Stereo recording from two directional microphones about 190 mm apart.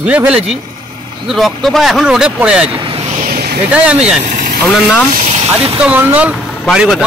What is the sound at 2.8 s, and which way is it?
Vehicle, 30° right (ahead or behind).